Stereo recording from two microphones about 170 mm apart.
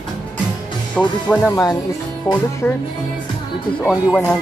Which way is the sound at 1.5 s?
20° left (ahead or behind).